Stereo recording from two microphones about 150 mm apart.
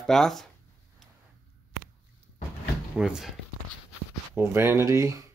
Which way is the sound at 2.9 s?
5° right (ahead or behind).